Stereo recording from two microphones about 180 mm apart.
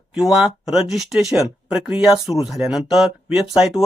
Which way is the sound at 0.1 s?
5° right (ahead or behind).